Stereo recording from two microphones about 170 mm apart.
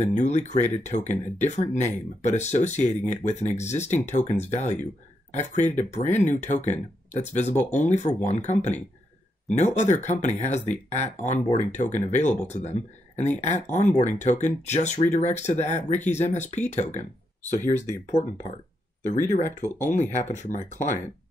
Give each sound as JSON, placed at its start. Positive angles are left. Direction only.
{"t": 0.0, "sound": "speech", "side_deg": 40}
{"t": 19.0, "sound": "speech", "side_deg": 45}